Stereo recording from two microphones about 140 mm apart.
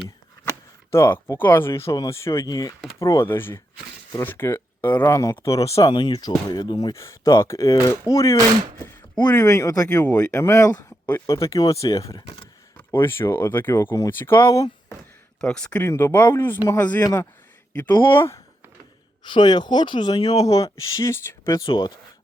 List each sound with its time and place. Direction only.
0.4 s speech: 20° left (ahead or behind)
15.4 s speech: 5° left (ahead or behind)
17.0 s speech: 25° left (ahead or behind)
19.2 s speech: 35° left (ahead or behind)
21.7 s speech: 35° left (ahead or behind)